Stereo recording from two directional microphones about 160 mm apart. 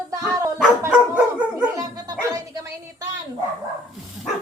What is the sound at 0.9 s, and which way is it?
Dog, 10° right (ahead or behind).